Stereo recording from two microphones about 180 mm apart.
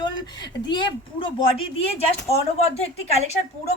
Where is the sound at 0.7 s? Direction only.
25° left (ahead or behind).